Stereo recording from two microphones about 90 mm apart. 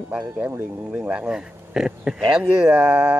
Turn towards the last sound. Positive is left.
turn(degrees=-15)  # may be behind; listen again after turning